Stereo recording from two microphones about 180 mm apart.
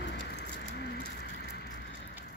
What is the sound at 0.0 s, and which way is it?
Bird, 70° left (ahead or behind).